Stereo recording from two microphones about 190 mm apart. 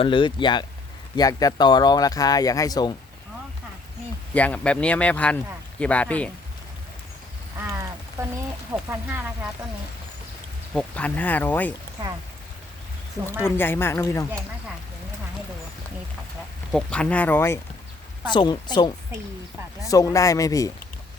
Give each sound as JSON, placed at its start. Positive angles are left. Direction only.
{"t": 0.0, "sound": "speech", "side_deg": 25}
{"t": 4.4, "sound": "speech", "side_deg": 5}
{"t": 7.6, "sound": "a sound", "side_deg": -15}
{"t": 8.7, "sound": "speech", "side_deg": -10}
{"t": 10.8, "sound": "speech", "side_deg": 5}
{"t": 12.0, "sound": "speech", "side_deg": -20}
{"t": 13.6, "sound": "speech", "side_deg": 10}
{"t": 16.7, "sound": "speech", "side_deg": 5}
{"t": 18.3, "sound": "speech", "side_deg": 25}
{"t": 19.9, "sound": "speech", "side_deg": 20}